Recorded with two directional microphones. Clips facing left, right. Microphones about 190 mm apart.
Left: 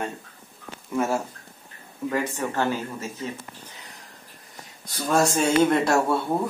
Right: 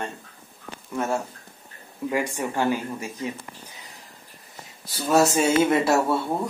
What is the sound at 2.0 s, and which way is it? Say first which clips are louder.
Speech: even; 10° right (ahead or behind).